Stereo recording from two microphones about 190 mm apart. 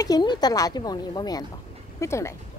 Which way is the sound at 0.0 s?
20° left (ahead or behind).